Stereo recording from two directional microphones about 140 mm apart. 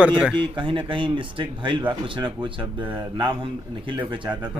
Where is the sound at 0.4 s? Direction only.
35° right (ahead or behind).